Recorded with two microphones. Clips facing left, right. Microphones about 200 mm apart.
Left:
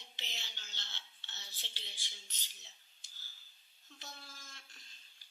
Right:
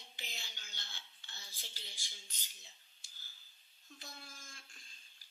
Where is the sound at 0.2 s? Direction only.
15° right (ahead or behind).